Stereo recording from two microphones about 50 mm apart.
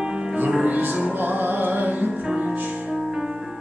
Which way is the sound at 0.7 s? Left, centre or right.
Right.